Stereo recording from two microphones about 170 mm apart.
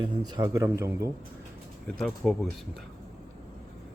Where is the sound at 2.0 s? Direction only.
Centre (ahead or behind).